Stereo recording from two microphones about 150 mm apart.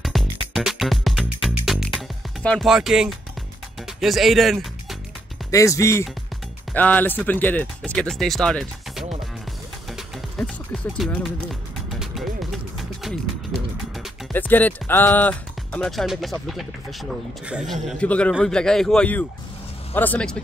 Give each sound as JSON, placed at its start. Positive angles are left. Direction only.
{"t": 0.0, "sound": "music", "side_deg": 0}
{"t": 4.0, "sound": "a man's voice", "side_deg": 0}
{"t": 5.5, "sound": "speech", "side_deg": 20}
{"t": 9.9, "sound": "music", "side_deg": 5}
{"t": 14.3, "sound": "a man's voice", "side_deg": 10}
{"t": 17.8, "sound": "a man's voice", "side_deg": 10}